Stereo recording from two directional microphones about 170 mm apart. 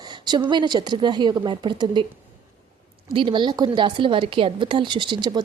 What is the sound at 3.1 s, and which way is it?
Speech, 30° right (ahead or behind).